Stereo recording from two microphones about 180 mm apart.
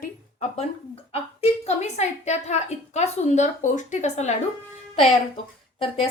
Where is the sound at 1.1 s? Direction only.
35° left (ahead or behind).